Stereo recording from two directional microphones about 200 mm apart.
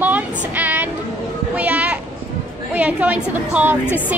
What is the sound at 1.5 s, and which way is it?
Children playing, 5° right (ahead or behind).